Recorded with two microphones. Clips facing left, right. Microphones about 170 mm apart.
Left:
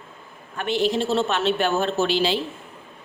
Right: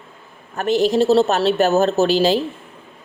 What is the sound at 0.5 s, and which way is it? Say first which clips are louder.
Speech: right 6 dB; 40° right (ahead or behind).